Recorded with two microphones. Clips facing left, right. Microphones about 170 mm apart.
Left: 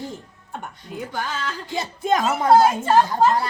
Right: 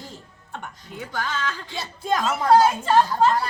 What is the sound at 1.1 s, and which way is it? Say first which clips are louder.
Speech: right 1 dB; 10° left (ahead or behind).